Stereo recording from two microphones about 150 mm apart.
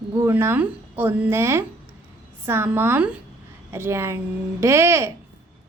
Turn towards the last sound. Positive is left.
turn(degrees=-20)  # may be behind; listen again after turning